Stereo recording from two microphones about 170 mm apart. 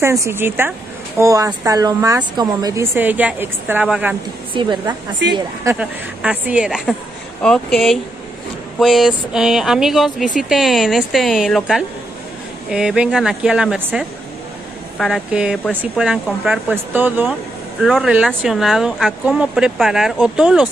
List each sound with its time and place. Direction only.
0.0 s a woman's voice: 15° right (ahead or behind)
4.6 s a woman's voice: 25° right (ahead or behind)
5.8 s a woman's voice: 5° right (ahead or behind)